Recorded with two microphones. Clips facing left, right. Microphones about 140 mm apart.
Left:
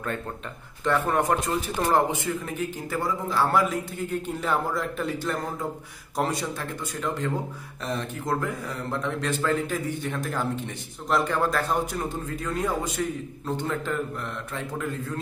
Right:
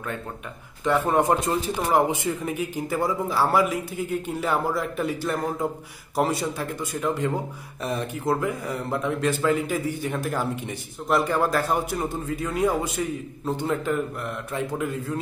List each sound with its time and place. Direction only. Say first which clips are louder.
0.8 s speech: right 3 dB; 15° right (ahead or behind)
1.8 s speech: even; 10° right (ahead or behind)